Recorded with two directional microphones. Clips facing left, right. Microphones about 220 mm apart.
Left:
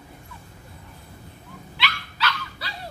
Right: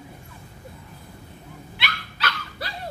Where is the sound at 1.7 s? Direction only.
50° right (ahead or behind).